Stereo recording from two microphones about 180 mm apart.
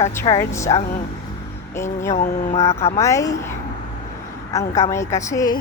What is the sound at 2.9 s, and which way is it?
Speech, 15° left (ahead or behind).